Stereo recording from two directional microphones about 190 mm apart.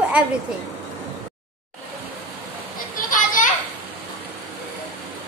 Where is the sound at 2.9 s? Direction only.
45° left (ahead or behind).